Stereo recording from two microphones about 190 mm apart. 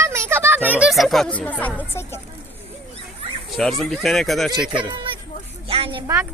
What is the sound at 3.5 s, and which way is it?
Speech, centre (ahead or behind).